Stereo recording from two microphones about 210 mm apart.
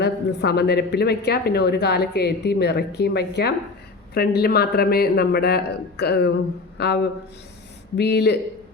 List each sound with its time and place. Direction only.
0.0 s a woman's voice: 50° left (ahead or behind)